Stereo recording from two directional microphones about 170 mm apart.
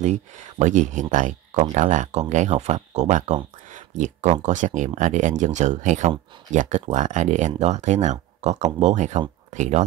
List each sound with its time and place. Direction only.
0.0 s speech: 45° right (ahead or behind)